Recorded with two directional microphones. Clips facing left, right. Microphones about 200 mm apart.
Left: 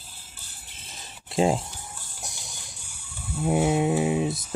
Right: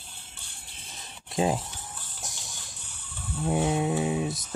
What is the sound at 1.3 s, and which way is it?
Speech, 25° left (ahead or behind).